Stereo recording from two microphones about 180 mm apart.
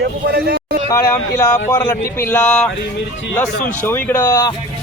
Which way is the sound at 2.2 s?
10° left (ahead or behind).